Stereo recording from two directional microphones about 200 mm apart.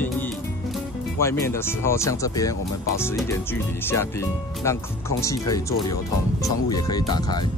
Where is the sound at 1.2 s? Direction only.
15° left (ahead or behind).